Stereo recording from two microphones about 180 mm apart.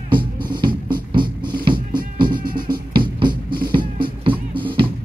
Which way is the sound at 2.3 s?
55° right (ahead or behind).